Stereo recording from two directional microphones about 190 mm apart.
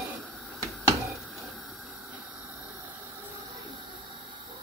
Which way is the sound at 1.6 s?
Centre (ahead or behind).